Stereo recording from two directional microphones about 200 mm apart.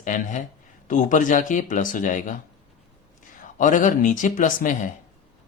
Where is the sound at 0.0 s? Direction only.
40° left (ahead or behind).